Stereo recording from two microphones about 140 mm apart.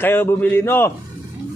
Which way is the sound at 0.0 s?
15° left (ahead or behind).